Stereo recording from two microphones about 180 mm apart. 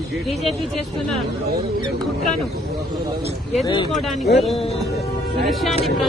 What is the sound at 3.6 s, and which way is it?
Speech, 25° left (ahead or behind).